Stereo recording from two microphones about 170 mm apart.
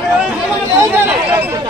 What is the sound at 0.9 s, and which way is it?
Speech, 15° right (ahead or behind).